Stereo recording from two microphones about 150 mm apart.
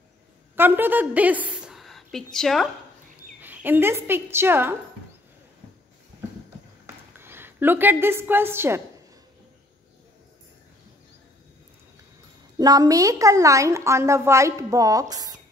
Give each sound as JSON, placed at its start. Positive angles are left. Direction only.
{"t": 0.6, "sound": "a woman's voice", "side_deg": -15}
{"t": 3.3, "sound": "speech", "side_deg": -15}
{"t": 7.2, "sound": "a woman's voice", "side_deg": -15}
{"t": 12.5, "sound": "a woman's voice", "side_deg": -25}